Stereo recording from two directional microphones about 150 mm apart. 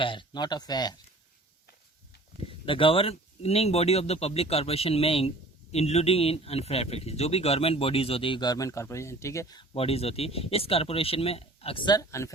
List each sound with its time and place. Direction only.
0.0 s speech: 35° left (ahead or behind)
2.5 s speech: 35° left (ahead or behind)
9.7 s speech: 40° left (ahead or behind); by 12.3 s 20° left (ahead or behind)